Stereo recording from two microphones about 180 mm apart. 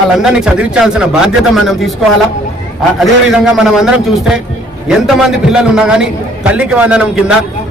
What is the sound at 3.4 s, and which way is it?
A man's voice, 5° right (ahead or behind).